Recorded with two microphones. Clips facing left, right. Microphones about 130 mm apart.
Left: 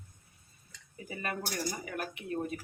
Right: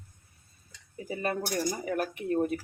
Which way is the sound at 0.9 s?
30° right (ahead or behind).